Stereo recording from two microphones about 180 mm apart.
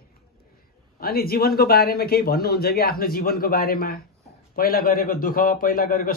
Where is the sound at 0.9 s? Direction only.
55° left (ahead or behind).